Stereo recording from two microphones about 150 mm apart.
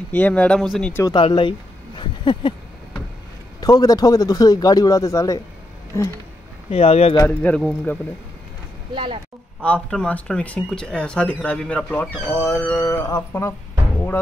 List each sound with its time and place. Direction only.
0.1 s speech: 10° left (ahead or behind)
1.0 s speech: 30° left (ahead or behind)
2.0 s a sound: 30° left (ahead or behind)
3.6 s a man's voice: 25° left (ahead or behind)
6.7 s speech: 40° left (ahead or behind)
7.2 s speech: 10° left (ahead or behind)
8.9 s speech: 35° right (ahead or behind)
9.6 s speech: 5° left (ahead or behind)
12.7 s a man's voice: 20° left (ahead or behind)